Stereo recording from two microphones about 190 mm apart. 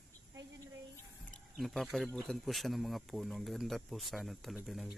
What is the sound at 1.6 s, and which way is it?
Speech, centre (ahead or behind).